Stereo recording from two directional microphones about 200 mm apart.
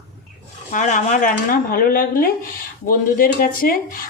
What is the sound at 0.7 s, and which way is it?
Speech, 40° left (ahead or behind).